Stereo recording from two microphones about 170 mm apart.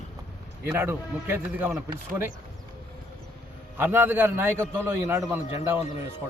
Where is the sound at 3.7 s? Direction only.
10° right (ahead or behind).